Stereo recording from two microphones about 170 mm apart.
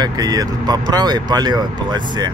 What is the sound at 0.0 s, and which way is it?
Speech, 25° right (ahead or behind).